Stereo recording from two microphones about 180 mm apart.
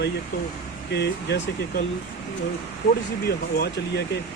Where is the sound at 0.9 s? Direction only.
70° left (ahead or behind).